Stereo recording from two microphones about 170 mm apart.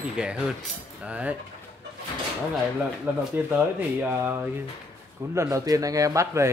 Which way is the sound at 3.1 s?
10° right (ahead or behind).